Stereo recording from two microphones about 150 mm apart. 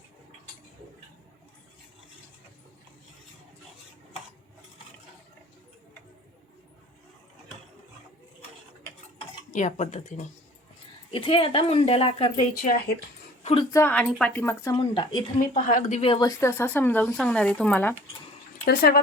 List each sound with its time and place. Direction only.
9.5 s speech: 55° left (ahead or behind)
11.1 s speech: 35° left (ahead or behind)
13.4 s a sound: 40° left (ahead or behind)
13.7 s a woman's voice: 20° left (ahead or behind)
13.9 s speech: 5° left (ahead or behind)
14.8 s speech: 30° left (ahead or behind)
15.4 s speech: 65° left (ahead or behind)
16.0 s speech: 35° left (ahead or behind)
16.2 s speech: 20° left (ahead or behind)
18.6 s speech: 90° left